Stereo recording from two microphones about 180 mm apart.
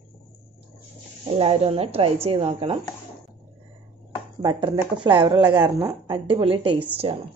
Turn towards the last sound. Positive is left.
turn(degrees=-30)  # may be behind; listen again after turning